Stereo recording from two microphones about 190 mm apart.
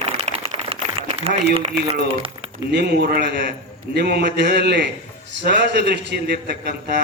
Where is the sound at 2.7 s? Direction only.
60° right (ahead or behind).